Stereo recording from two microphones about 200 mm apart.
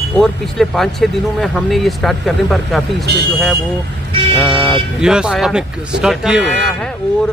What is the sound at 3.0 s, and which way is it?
Speech, 55° right (ahead or behind).